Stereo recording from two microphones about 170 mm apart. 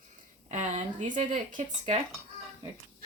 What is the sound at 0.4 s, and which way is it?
Speech, 45° right (ahead or behind).